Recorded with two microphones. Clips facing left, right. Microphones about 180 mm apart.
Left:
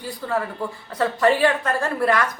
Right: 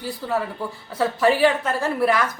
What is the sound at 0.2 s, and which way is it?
A woman's voice, 15° right (ahead or behind).